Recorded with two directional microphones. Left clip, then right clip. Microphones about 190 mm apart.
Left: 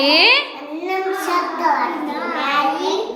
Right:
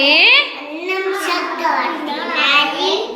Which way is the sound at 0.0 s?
15° left (ahead or behind).